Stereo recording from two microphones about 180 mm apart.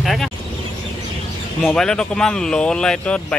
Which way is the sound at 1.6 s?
5° left (ahead or behind).